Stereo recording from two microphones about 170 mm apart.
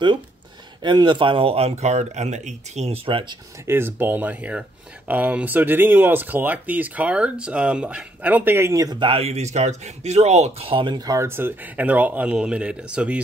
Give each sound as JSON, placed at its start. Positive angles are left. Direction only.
{"t": 0.8, "sound": "speech", "side_deg": -25}
{"t": 3.6, "sound": "speech", "side_deg": -15}
{"t": 9.1, "sound": "speech", "side_deg": -40}